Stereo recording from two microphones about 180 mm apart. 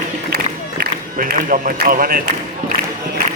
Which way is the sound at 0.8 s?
50° right (ahead or behind).